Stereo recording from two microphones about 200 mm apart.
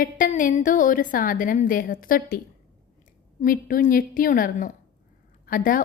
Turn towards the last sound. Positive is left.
turn(degrees=45)  # may be behind; listen again after turning